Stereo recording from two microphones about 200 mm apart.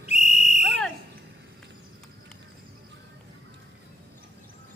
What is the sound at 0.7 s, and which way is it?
Smoke detector, centre (ahead or behind).